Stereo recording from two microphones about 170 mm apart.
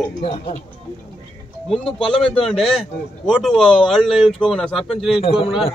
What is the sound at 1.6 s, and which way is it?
Speech, centre (ahead or behind).